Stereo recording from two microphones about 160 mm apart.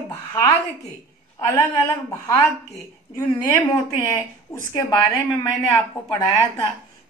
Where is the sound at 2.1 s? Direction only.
20° left (ahead or behind).